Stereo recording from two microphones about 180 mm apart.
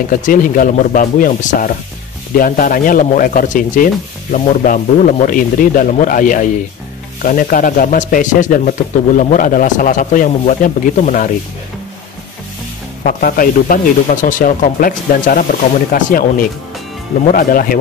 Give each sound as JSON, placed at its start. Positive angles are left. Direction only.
{"t": 0.1, "sound": "speech", "side_deg": 50}
{"t": 13.0, "sound": "speech", "side_deg": 50}